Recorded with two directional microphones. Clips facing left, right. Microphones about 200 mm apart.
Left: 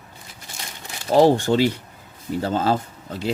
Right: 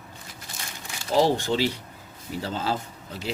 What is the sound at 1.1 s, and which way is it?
Speech, 50° left (ahead or behind).